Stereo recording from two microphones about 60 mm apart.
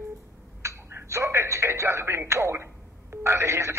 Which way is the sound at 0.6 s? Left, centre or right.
Right.